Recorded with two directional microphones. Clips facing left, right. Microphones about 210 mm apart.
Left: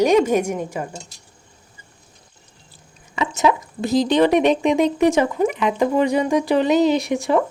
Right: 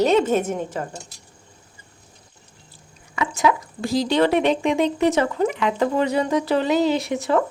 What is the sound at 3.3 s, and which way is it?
A woman's voice, 20° left (ahead or behind).